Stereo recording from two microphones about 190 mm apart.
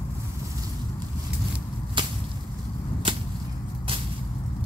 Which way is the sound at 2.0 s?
25° right (ahead or behind).